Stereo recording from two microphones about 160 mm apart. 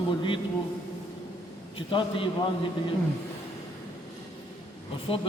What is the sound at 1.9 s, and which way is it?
Speech, 30° left (ahead or behind).